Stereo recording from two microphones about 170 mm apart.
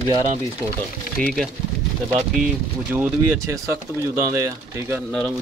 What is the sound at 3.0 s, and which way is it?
Speech, 15° right (ahead or behind).